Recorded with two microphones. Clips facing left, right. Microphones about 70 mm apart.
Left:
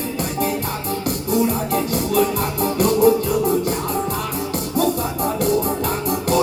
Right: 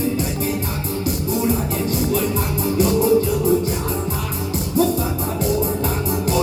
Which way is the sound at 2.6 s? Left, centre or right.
Left.